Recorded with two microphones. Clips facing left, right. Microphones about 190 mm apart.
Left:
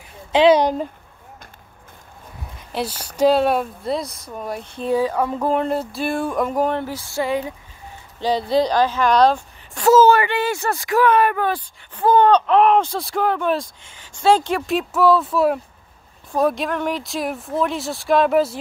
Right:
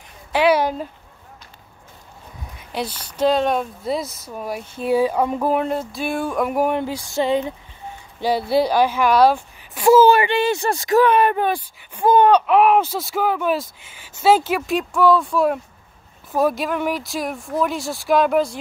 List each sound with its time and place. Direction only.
0.3 s a sound: 20° left (ahead or behind)
2.7 s speech: 5° left (ahead or behind); by 5.4 s 15° right (ahead or behind)
5.4 s speech: 5° right (ahead or behind); by 7.5 s 20° right (ahead or behind)
8.2 s speech: 10° right (ahead or behind)